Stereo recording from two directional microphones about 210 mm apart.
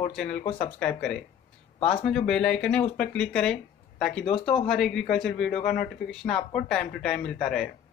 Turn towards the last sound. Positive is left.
turn(degrees=0)  # may be behind; listen again after turning